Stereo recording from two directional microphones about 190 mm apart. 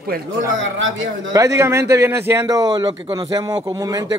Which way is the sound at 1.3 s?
15° right (ahead or behind).